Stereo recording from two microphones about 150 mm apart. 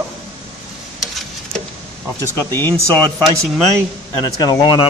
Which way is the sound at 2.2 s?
15° left (ahead or behind).